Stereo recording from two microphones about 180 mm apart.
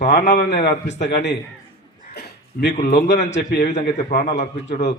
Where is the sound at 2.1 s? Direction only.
65° left (ahead or behind).